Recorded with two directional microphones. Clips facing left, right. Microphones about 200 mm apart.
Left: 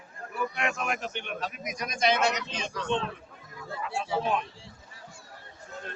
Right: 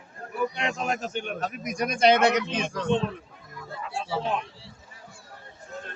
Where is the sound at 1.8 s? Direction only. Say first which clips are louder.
Right 6 dB; 60° right (ahead or behind).